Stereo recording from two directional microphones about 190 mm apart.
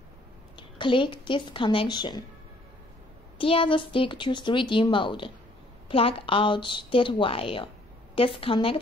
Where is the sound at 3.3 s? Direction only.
30° left (ahead or behind).